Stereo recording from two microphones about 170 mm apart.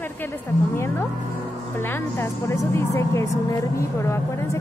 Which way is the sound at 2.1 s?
15° left (ahead or behind).